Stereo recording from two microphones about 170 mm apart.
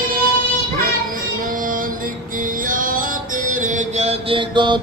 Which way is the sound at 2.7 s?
55° right (ahead or behind).